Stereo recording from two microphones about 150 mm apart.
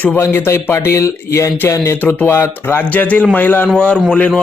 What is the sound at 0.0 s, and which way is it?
Speech, 15° left (ahead or behind).